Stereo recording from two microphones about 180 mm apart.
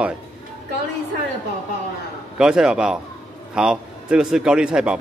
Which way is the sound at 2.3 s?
5° right (ahead or behind).